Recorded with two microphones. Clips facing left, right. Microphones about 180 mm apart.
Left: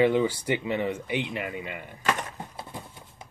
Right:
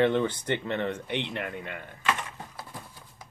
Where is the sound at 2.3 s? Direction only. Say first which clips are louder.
Left 3 dB; 25° left (ahead or behind).